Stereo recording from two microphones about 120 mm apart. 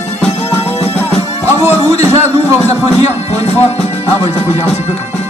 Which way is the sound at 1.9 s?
65° left (ahead or behind).